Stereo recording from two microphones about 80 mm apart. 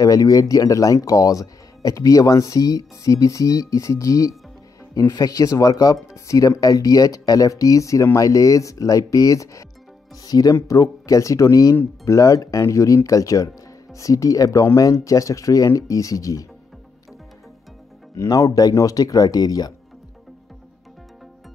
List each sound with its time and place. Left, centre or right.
0.0 s speech: left
18.1 s speech: left